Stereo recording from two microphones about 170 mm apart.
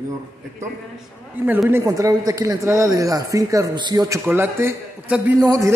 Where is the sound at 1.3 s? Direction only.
10° right (ahead or behind).